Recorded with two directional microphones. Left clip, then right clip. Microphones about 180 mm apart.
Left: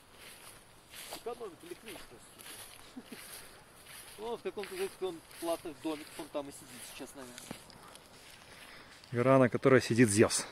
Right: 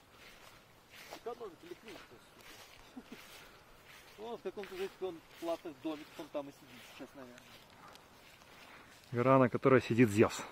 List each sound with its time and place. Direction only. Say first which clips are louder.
1.3 s a sound: left 2 dB; 35° right (ahead or behind)
4.2 s speech: left 4 dB; 55° right (ahead or behind)
4.6 s speech: left 4 dB; centre (ahead or behind)
5.0 s speech: left 3 dB; 55° right (ahead or behind)
7.0 s speech: left 4 dB; 45° right (ahead or behind)
9.1 s speech: left 2 dB; 5° right (ahead or behind)